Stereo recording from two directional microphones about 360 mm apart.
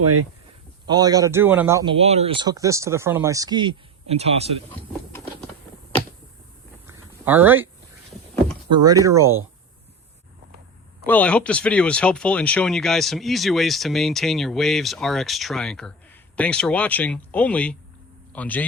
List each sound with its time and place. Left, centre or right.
0.0 s speech: right
0.9 s a man's voice: centre
6.8 s a sound: centre
8.7 s a man's voice: centre
11.0 s speech: centre